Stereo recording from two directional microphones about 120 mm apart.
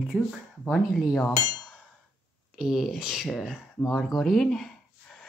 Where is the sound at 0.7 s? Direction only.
Centre (ahead or behind).